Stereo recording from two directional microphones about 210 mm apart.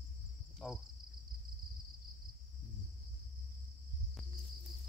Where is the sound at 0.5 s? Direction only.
Centre (ahead or behind).